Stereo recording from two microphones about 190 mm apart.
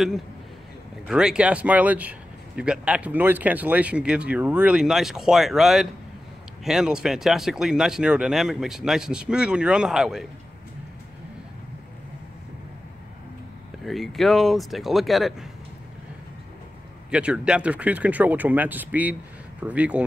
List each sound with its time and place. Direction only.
1.0 s speech: 5° right (ahead or behind)
13.8 s speech: centre (ahead or behind)
17.1 s speech: 5° right (ahead or behind)